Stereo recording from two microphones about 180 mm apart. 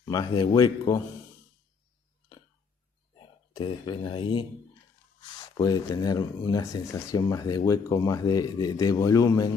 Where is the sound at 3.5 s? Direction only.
25° left (ahead or behind).